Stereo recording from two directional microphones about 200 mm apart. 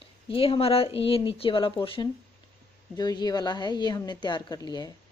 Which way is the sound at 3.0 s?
20° left (ahead or behind).